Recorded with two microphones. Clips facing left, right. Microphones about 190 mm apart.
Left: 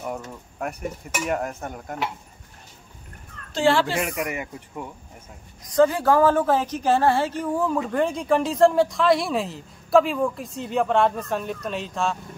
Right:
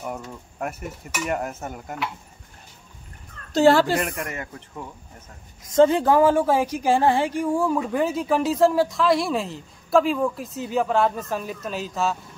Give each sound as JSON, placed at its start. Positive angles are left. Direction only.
{"t": 0.1, "sound": "a woman's voice", "side_deg": 0}
{"t": 3.5, "sound": "speech", "side_deg": -40}
{"t": 4.0, "sound": "speech", "side_deg": 10}
{"t": 5.7, "sound": "a woman's voice", "side_deg": -25}